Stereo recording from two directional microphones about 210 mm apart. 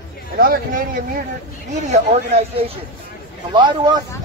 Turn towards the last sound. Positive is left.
turn(degrees=-20)  # may be behind; listen again after turning